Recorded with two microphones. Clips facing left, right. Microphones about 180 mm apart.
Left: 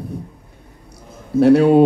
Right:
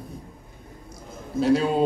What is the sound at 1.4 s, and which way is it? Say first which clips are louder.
Speech: left 10 dB; 65° left (ahead or behind).